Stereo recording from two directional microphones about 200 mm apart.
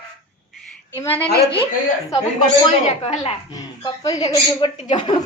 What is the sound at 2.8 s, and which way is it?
A woman's voice, 30° left (ahead or behind).